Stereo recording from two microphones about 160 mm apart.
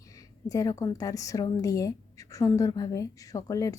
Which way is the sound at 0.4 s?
20° left (ahead or behind).